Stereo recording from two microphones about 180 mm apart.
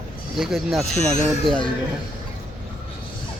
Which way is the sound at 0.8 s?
40° left (ahead or behind).